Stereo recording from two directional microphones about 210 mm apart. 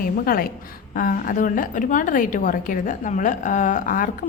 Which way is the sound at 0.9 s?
40° left (ahead or behind).